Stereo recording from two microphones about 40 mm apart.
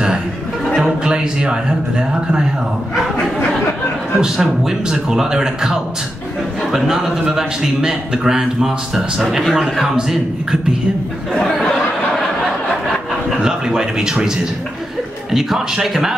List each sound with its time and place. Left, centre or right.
0.7 s a man's voice: centre
4.2 s a man's voice: centre
13.4 s a man's voice: centre